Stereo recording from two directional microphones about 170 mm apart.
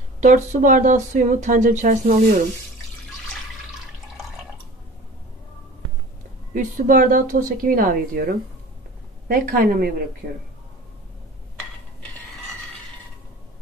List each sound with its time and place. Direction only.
0.2 s speech: 45° right (ahead or behind)
6.5 s a woman's voice: 55° right (ahead or behind)